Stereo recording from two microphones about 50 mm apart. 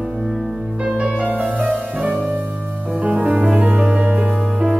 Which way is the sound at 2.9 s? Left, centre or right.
Right.